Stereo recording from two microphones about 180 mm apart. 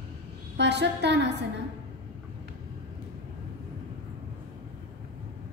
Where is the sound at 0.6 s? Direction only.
70° right (ahead or behind).